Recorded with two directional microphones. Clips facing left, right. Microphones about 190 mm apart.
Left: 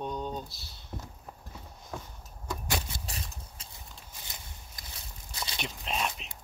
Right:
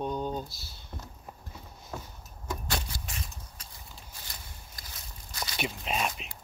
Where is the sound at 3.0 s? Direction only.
35° left (ahead or behind).